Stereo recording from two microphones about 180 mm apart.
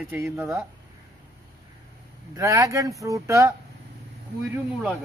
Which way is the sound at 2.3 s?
15° right (ahead or behind).